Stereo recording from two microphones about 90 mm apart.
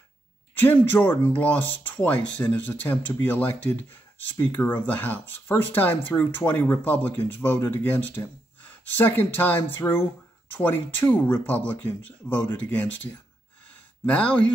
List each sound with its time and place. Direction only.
0.6 s speech: 25° left (ahead or behind)